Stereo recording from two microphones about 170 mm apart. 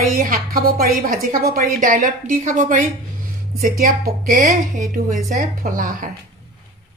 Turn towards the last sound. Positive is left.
turn(degrees=-55)  # may be behind; listen again after turning